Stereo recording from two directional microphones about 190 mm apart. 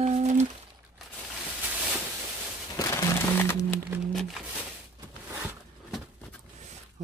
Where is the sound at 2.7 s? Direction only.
20° left (ahead or behind).